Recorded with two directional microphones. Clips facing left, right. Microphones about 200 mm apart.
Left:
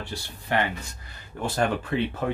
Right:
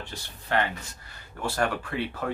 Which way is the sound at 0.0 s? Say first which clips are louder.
Left 4 dB; 15° left (ahead or behind).